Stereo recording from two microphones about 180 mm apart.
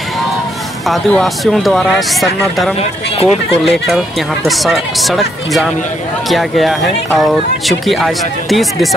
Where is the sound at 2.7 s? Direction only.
35° left (ahead or behind).